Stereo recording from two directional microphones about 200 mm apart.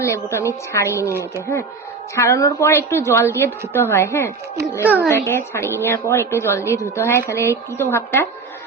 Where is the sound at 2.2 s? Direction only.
15° left (ahead or behind).